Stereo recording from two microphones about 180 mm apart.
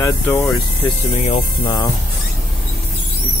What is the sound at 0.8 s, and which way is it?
Speech, 35° left (ahead or behind).